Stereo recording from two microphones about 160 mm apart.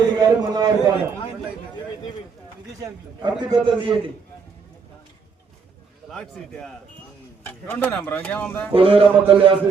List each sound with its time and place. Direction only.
0.0 s a man's voice: 25° right (ahead or behind)
2.8 s a man's voice: 30° right (ahead or behind)
6.1 s a man's voice: 5° left (ahead or behind)
8.7 s a man's voice: 35° right (ahead or behind)